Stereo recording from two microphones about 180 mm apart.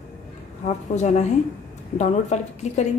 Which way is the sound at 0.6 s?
40° left (ahead or behind).